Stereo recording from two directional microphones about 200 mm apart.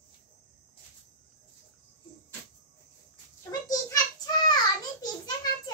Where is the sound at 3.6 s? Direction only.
20° left (ahead or behind).